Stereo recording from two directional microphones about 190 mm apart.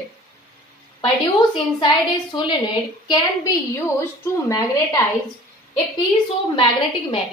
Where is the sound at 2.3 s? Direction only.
25° left (ahead or behind).